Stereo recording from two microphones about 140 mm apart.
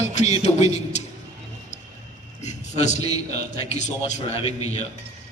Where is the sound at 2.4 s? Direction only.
55° left (ahead or behind).